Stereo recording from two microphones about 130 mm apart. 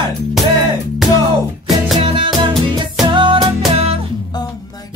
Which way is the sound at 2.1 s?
40° right (ahead or behind).